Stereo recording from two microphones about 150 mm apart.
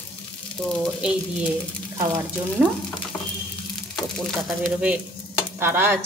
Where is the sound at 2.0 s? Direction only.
15° right (ahead or behind).